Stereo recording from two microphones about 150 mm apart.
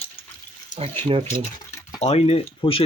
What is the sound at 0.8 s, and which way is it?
Speech, 40° right (ahead or behind).